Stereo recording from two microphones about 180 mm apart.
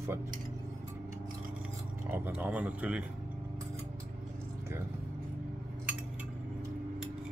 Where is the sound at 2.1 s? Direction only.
10° right (ahead or behind).